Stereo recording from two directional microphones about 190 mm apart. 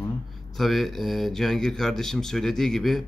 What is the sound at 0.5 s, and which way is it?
Speech, centre (ahead or behind).